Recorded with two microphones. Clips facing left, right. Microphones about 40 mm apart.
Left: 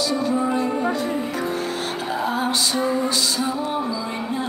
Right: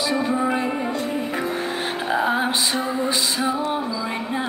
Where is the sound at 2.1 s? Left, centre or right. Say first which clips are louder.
Right 3 dB; right.